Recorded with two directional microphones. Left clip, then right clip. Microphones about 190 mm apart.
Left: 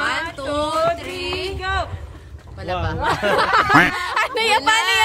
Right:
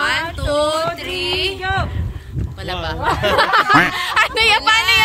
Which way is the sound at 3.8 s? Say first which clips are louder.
Right 2 dB; 10° left (ahead or behind).